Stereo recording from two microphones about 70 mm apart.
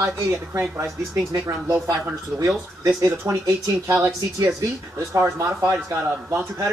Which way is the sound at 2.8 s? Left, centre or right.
Right.